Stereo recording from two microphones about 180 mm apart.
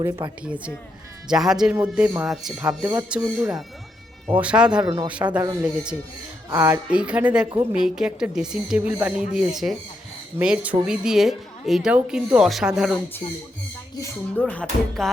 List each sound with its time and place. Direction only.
0.0 s a woman's voice: 10° right (ahead or behind)
6.5 s a woman's voice: 15° right (ahead or behind)
13.2 s speech: 25° left (ahead or behind)
14.0 s speech: 10° left (ahead or behind)